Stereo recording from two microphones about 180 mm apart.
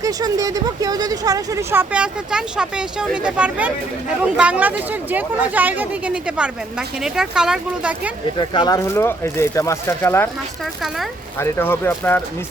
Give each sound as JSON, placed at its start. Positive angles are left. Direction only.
{"t": 0.0, "sound": "speech", "side_deg": -20}
{"t": 8.4, "sound": "speech", "side_deg": 25}
{"t": 10.8, "sound": "speech", "side_deg": 0}
{"t": 11.3, "sound": "speech", "side_deg": 10}